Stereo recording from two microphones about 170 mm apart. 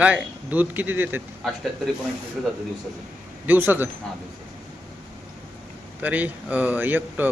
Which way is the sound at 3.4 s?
10° right (ahead or behind).